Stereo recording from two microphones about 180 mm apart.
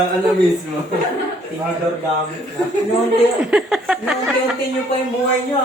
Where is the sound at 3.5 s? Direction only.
Centre (ahead or behind).